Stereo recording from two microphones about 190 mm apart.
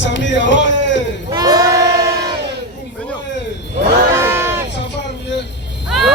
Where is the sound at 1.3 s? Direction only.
20° right (ahead or behind).